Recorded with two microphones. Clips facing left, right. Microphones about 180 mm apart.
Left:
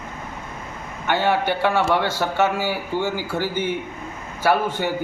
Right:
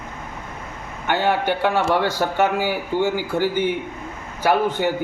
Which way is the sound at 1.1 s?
15° right (ahead or behind).